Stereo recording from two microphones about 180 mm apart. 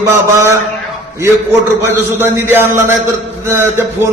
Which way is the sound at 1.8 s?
15° right (ahead or behind).